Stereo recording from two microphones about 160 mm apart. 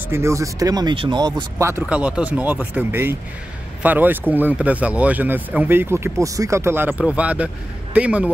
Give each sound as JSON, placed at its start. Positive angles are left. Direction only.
{"t": 0.1, "sound": "speech", "side_deg": -15}
{"t": 1.6, "sound": "speech", "side_deg": -10}